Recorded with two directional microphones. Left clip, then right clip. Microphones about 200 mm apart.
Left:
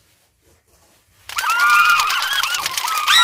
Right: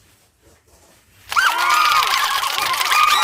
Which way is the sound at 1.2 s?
Centre (ahead or behind).